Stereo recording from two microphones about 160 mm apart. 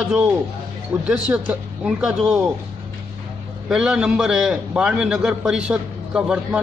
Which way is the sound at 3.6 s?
5° right (ahead or behind).